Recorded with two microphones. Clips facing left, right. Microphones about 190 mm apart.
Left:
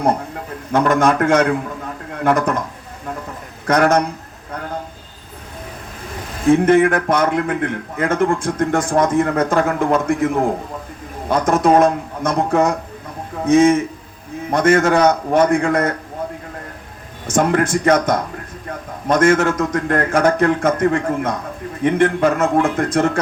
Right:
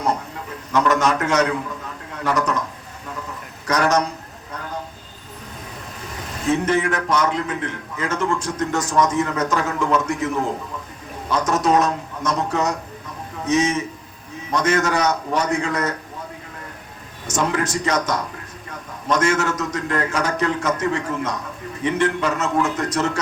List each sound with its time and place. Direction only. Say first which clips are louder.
0.7 s a man's voice: left 4 dB; 55° left (ahead or behind)
3.7 s a man's voice: left 4 dB; 55° left (ahead or behind)
6.5 s a man's voice: left 8 dB; 55° left (ahead or behind)
17.2 s a man's voice: left 6 dB; 55° left (ahead or behind)